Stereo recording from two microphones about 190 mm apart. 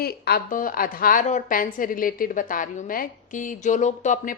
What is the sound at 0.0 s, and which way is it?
A woman's voice, 55° left (ahead or behind).